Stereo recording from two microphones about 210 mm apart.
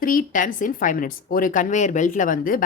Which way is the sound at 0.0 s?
40° left (ahead or behind).